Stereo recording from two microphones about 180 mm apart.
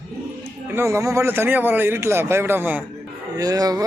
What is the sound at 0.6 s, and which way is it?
Speech, 15° right (ahead or behind).